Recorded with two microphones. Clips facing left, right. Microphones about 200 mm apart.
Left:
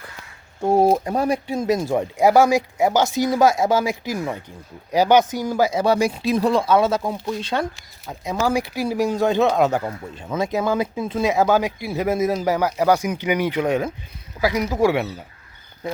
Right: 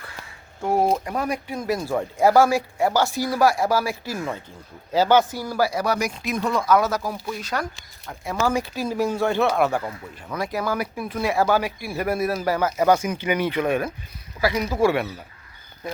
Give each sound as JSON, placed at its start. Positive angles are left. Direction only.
{"t": 0.6, "sound": "speech", "side_deg": 25}
{"t": 8.2, "sound": "speech", "side_deg": 15}